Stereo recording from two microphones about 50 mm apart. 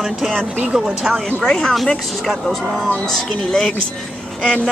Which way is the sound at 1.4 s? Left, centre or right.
Centre.